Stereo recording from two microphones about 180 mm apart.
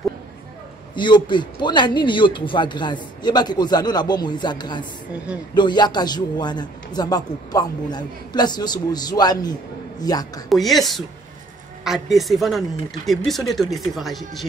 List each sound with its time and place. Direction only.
0.9 s a man's voice: 25° left (ahead or behind)
5.1 s speech: 5° right (ahead or behind)
5.5 s a man's voice: 25° left (ahead or behind)
10.5 s speech: centre (ahead or behind)